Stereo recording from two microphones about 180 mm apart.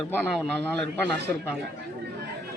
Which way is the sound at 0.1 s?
10° left (ahead or behind).